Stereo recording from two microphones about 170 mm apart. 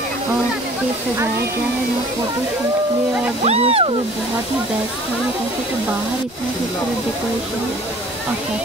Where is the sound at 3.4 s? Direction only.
40° right (ahead or behind).